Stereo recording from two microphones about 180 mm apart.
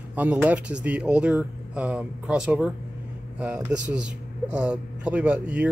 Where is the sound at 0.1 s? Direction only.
10° right (ahead or behind).